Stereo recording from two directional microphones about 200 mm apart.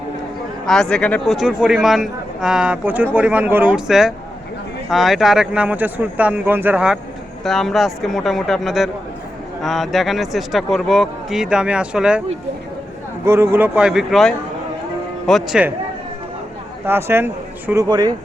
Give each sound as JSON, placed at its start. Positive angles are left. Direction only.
{"t": 0.6, "sound": "a man's voice", "side_deg": 0}
{"t": 13.2, "sound": "speech", "side_deg": -15}
{"t": 16.8, "sound": "a man's voice", "side_deg": -10}